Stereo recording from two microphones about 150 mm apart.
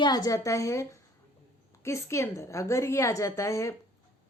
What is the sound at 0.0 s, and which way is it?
A woman's voice, 25° left (ahead or behind).